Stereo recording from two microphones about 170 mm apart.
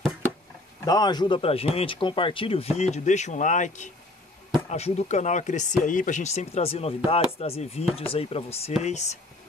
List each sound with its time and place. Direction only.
0.8 s speech: 25° left (ahead or behind); by 9.1 s 40° left (ahead or behind)